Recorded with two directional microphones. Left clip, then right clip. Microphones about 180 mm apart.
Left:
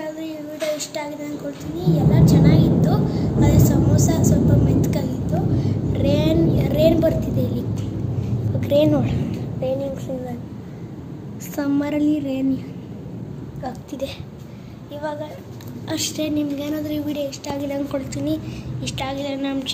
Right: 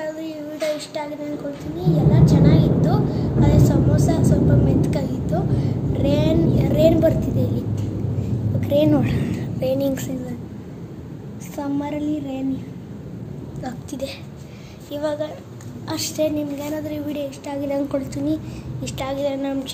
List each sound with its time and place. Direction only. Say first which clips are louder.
0.0 s child singing: right 1 dB; 10° right (ahead or behind)
1.8 s a woman's voice: even; 10° right (ahead or behind)
11.5 s child singing: left 4 dB; 30° left (ahead or behind)
15.0 s a woman's voice: right 4 dB; 15° right (ahead or behind)